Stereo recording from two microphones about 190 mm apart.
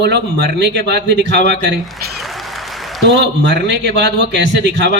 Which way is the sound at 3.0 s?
65° right (ahead or behind).